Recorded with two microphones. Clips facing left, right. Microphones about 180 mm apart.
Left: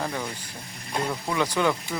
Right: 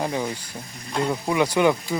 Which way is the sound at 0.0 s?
20° right (ahead or behind).